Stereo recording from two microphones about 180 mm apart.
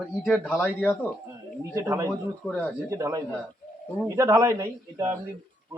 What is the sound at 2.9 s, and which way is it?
Speech, 15° right (ahead or behind).